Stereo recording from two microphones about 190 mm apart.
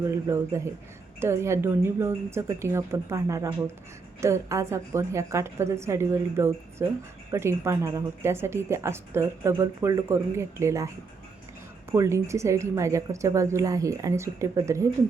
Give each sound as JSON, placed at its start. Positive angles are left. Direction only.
{"t": 0.0, "sound": "speech", "side_deg": -15}
{"t": 11.9, "sound": "speech", "side_deg": -15}